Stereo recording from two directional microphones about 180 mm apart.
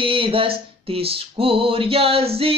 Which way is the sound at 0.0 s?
30° right (ahead or behind).